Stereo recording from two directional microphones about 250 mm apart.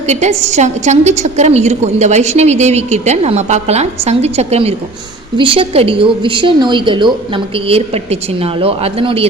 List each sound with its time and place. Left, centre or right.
0.1 s a woman's voice: right